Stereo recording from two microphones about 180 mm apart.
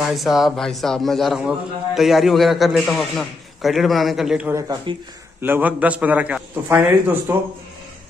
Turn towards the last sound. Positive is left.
turn(degrees=-10)  # may be behind; listen again after turning